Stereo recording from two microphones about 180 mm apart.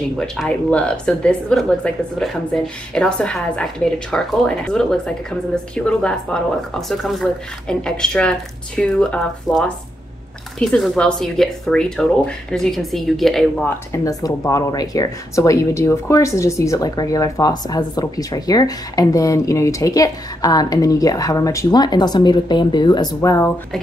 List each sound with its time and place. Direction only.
0.4 s a woman's voice: 5° left (ahead or behind)
13.9 s speech: 20° left (ahead or behind)